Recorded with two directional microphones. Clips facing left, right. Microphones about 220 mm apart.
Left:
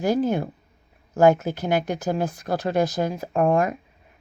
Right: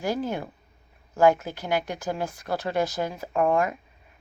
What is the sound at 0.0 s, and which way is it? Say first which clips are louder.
Speech: left 6 dB; 20° left (ahead or behind).